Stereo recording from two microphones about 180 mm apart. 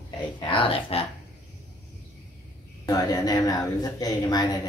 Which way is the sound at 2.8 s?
20° left (ahead or behind).